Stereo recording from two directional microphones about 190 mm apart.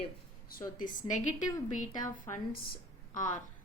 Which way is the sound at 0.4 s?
45° left (ahead or behind).